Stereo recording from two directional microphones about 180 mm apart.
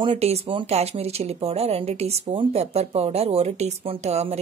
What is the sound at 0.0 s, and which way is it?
Speech, 35° right (ahead or behind).